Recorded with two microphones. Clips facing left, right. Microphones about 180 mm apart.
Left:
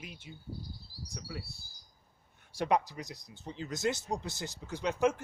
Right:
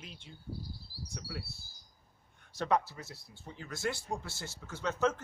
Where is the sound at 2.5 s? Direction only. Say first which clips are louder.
Left 1 dB; 15° left (ahead or behind).